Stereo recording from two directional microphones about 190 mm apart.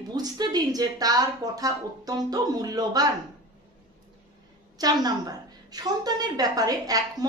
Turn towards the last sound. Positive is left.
turn(degrees=-20)  # may be behind; listen again after turning